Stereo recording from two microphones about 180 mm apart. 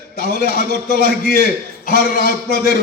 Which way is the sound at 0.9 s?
55° left (ahead or behind).